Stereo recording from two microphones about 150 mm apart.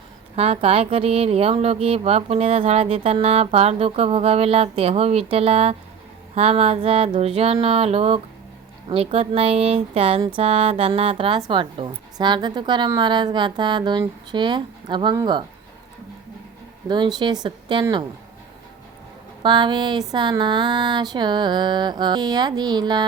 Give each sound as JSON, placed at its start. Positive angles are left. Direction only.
{"t": 0.3, "sound": "a woman's voice", "side_deg": -45}
{"t": 16.9, "sound": "mantra", "side_deg": -30}
{"t": 19.4, "sound": "a woman's voice", "side_deg": -30}
{"t": 20.4, "sound": "mantra", "side_deg": -30}